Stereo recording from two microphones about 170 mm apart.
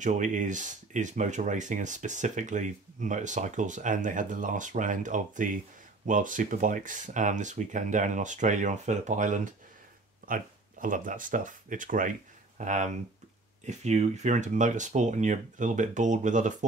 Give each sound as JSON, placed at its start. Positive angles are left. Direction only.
{"t": 0.0, "sound": "speech", "side_deg": -45}